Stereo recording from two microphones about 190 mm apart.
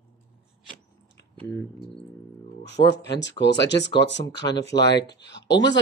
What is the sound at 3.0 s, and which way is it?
Speech, 70° left (ahead or behind).